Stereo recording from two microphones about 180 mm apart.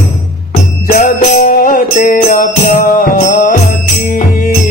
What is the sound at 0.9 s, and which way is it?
Music, 50° left (ahead or behind).